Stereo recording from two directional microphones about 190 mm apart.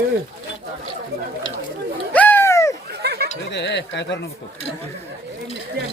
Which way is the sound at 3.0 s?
60° right (ahead or behind).